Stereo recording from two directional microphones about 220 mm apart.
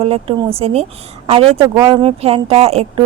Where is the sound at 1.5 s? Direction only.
15° right (ahead or behind).